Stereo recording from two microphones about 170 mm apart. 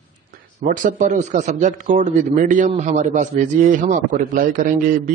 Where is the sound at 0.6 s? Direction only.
50° right (ahead or behind).